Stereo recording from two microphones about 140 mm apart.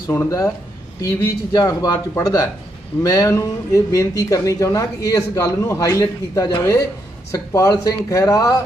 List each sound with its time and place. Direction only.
0.1 s speech: 20° left (ahead or behind)